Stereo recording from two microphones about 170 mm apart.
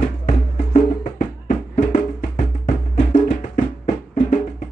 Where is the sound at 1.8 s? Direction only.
50° left (ahead or behind).